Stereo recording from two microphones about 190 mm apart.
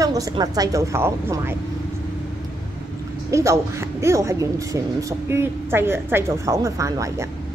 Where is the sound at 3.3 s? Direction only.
15° right (ahead or behind).